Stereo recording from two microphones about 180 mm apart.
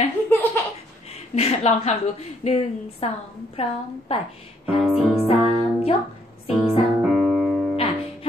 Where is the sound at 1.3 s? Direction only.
35° left (ahead or behind).